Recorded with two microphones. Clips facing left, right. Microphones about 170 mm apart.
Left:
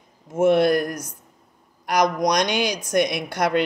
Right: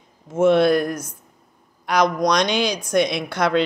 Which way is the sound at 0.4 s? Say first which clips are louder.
Right 2 dB; 15° left (ahead or behind).